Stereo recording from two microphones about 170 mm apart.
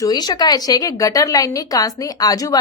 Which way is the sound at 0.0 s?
25° left (ahead or behind).